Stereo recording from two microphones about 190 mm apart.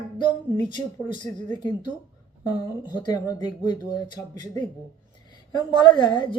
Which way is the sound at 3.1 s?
20° left (ahead or behind).